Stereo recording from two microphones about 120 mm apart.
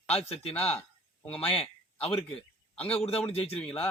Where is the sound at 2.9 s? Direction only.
55° left (ahead or behind).